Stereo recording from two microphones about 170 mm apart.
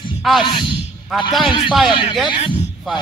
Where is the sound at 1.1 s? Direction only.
Centre (ahead or behind).